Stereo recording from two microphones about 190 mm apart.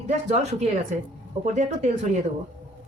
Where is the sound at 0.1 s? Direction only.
35° right (ahead or behind).